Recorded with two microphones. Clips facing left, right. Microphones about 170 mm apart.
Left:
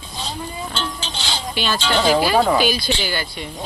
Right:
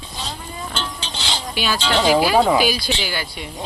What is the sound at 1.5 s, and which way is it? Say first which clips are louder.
Speech: even; 10° right (ahead or behind).